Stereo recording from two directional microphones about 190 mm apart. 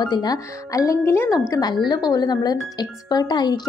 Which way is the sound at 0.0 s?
20° left (ahead or behind).